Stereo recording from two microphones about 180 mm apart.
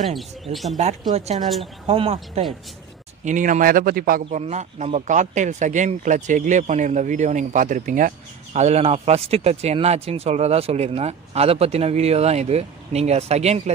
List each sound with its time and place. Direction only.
0.1 s speech: centre (ahead or behind)
1.1 s speech: 35° right (ahead or behind)
3.3 s speech: 45° right (ahead or behind)
4.4 s speech: 40° right (ahead or behind)